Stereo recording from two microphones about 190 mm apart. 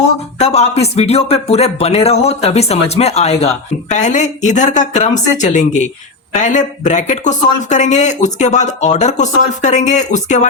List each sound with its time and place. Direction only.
0.3 s speech: 35° left (ahead or behind)